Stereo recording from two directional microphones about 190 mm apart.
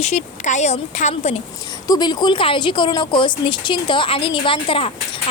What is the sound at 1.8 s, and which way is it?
Speech, 20° left (ahead or behind).